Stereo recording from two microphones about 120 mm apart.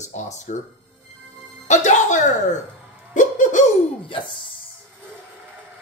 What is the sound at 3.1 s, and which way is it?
Laughter, 90° left.